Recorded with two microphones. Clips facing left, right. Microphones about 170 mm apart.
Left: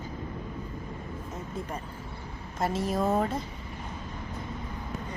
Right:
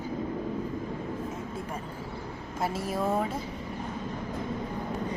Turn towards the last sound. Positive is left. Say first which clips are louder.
# left 2 dB
turn(degrees=-5)  # may be behind; listen again after turning